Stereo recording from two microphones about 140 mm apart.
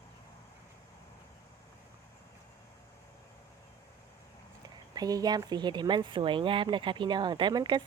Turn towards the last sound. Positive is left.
turn(degrees=-35)  # may be behind; listen again after turning